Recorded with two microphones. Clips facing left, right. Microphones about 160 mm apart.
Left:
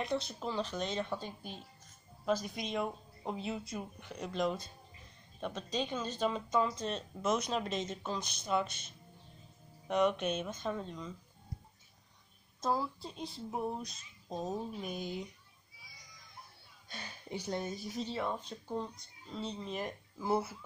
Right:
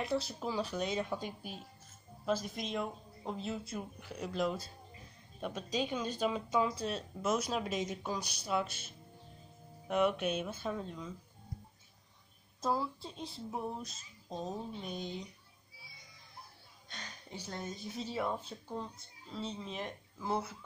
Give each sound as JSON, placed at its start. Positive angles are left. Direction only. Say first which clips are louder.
{"t": 0.0, "sound": "speech", "louder": "right 1 dB", "side_deg": -5}
{"t": 2.2, "sound": "speech", "louder": "left 1 dB", "side_deg": 0}
{"t": 12.6, "sound": "speech", "louder": "even", "side_deg": 0}
{"t": 15.8, "sound": "music", "louder": "even", "side_deg": -30}
{"t": 16.9, "sound": "speech", "louder": "left 5 dB", "side_deg": 10}
{"t": 17.9, "sound": "speech", "louder": "right 1 dB", "side_deg": -5}